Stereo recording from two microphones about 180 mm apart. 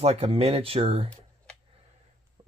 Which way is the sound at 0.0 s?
35° right (ahead or behind).